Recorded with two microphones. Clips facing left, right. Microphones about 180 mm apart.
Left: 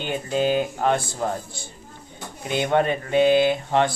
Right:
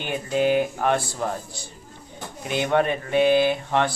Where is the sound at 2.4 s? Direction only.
30° left (ahead or behind).